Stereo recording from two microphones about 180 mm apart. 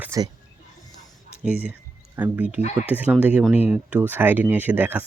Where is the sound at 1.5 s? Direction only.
5° right (ahead or behind).